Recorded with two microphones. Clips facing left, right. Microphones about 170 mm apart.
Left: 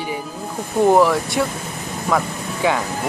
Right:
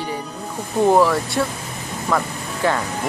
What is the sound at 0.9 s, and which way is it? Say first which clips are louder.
Speech: left 1 dB; 5° left (ahead or behind).